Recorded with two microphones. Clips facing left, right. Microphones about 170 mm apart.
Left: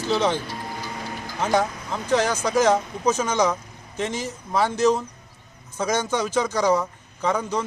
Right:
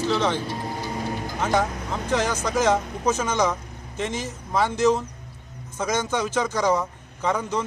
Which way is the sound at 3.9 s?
20° right (ahead or behind).